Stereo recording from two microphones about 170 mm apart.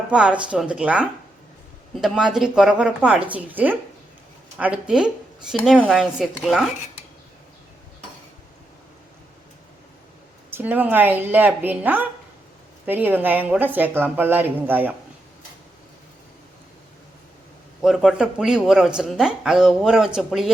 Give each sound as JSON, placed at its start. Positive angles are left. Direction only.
{"t": 0.1, "sound": "speech", "side_deg": -5}
{"t": 10.5, "sound": "speech", "side_deg": -10}
{"t": 17.8, "sound": "speech", "side_deg": 0}